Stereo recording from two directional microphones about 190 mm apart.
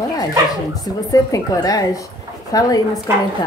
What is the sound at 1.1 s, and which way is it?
Speech, 20° left (ahead or behind).